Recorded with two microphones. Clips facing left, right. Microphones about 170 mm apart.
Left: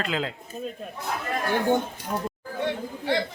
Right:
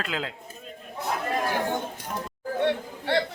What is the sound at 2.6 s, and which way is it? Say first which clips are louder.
Chatter: right 2 dB; 60° right (ahead or behind).